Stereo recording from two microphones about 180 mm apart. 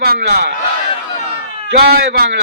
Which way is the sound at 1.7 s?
60° right (ahead or behind).